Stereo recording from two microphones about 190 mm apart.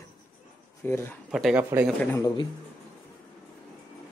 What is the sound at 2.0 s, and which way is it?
Speech, 15° left (ahead or behind).